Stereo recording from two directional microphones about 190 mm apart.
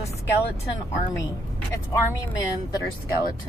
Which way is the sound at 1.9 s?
20° left (ahead or behind).